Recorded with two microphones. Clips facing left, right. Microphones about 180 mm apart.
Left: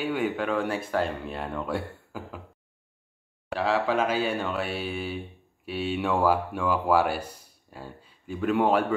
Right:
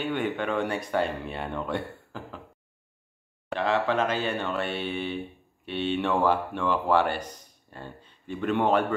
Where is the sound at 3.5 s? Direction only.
5° left (ahead or behind).